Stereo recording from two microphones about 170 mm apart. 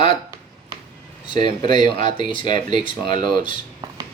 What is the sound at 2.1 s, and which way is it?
Speech, 30° left (ahead or behind).